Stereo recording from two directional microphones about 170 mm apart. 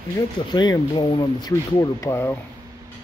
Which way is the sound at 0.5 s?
25° left (ahead or behind).